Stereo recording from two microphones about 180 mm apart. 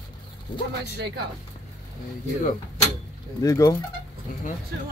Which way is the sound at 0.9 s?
65° right (ahead or behind).